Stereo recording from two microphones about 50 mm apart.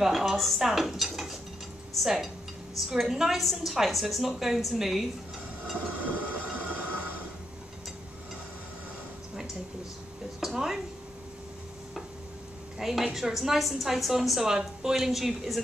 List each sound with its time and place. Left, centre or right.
0.0 s a woman's voice: centre
5.8 s train: right
10.4 s a sound: centre
12.7 s a woman's voice: centre